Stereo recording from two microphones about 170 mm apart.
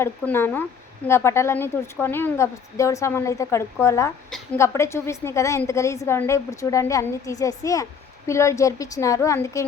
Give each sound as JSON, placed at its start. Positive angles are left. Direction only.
{"t": 0.0, "sound": "a woman's voice", "side_deg": 10}